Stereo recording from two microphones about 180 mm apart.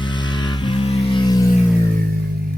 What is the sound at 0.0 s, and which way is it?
Music, 25° left (ahead or behind).